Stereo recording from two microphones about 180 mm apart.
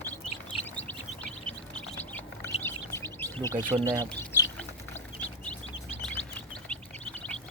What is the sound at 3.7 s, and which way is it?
Speech, 25° right (ahead or behind).